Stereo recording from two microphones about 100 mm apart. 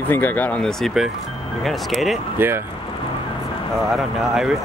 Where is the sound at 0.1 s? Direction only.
20° left (ahead or behind).